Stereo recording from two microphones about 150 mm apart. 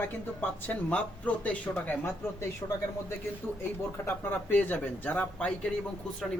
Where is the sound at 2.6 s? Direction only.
25° left (ahead or behind).